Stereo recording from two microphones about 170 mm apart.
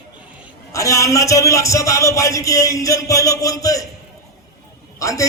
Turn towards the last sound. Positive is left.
turn(degrees=20)  # may be behind; listen again after turning